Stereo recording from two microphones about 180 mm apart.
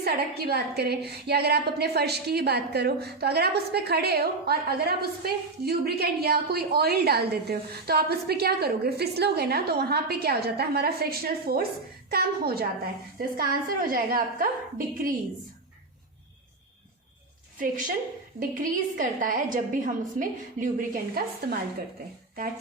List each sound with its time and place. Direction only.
0.0 s a woman's voice: 60° right (ahead or behind)
17.6 s a woman's voice: 50° right (ahead or behind)